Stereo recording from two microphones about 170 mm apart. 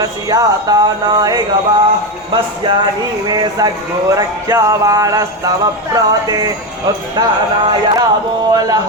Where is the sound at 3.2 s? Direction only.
25° right (ahead or behind).